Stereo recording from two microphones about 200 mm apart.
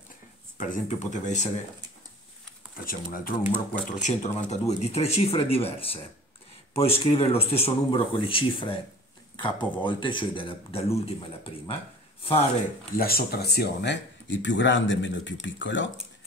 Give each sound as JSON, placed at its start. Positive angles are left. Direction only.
{"t": 0.6, "sound": "speech", "side_deg": 40}
{"t": 2.8, "sound": "speech", "side_deg": 45}
{"t": 4.0, "sound": "speech", "side_deg": 35}
{"t": 12.2, "sound": "speech", "side_deg": 30}
{"t": 12.9, "sound": "speech", "side_deg": 50}